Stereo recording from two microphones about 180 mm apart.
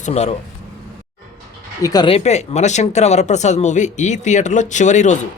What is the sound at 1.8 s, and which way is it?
Speech, 25° left (ahead or behind).